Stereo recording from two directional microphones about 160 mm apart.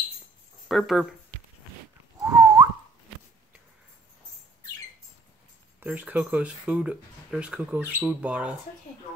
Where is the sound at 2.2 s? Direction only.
20° right (ahead or behind).